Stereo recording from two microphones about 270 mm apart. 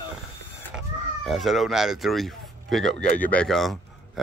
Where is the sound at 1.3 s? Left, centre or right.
Centre.